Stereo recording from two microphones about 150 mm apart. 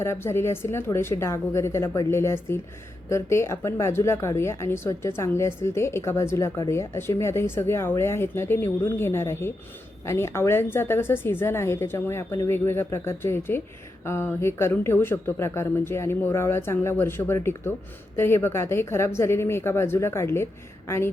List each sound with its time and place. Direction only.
0.0 s speech: 15° left (ahead or behind)